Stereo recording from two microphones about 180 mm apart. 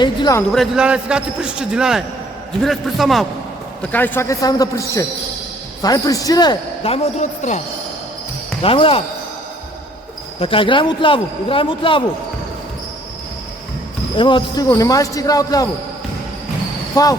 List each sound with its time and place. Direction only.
0.0 s a man's voice: 25° left (ahead or behind)
0.5 s a man's voice: centre (ahead or behind)
3.9 s a man's voice: 10° left (ahead or behind); by 7.6 s 40° left (ahead or behind)
8.6 s speech: 30° left (ahead or behind)
10.4 s a man's voice: 30° left (ahead or behind)
14.2 s a man's voice: 25° left (ahead or behind)
16.9 s speech: 20° left (ahead or behind)